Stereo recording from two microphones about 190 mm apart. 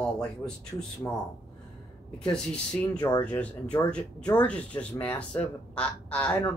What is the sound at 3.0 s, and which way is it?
Speech, 25° left (ahead or behind).